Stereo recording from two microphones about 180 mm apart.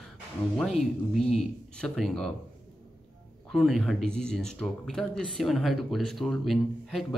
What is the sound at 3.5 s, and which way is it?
Speech, centre (ahead or behind).